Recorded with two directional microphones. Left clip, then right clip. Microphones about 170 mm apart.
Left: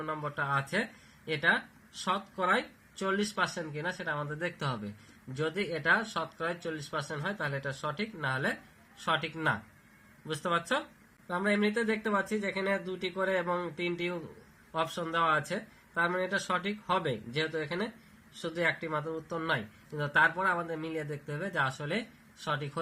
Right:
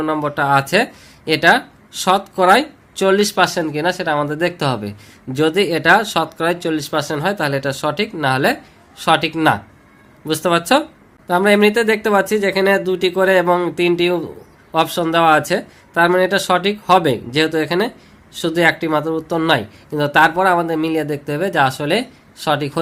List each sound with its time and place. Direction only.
0.0 s speech: 45° right (ahead or behind)